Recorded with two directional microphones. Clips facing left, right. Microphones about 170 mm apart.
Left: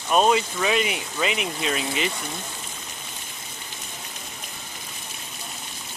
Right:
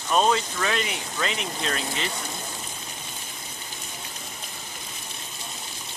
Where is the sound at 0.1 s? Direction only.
15° left (ahead or behind).